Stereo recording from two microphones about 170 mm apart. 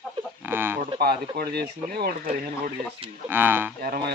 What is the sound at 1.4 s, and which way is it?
Speech, 65° right (ahead or behind).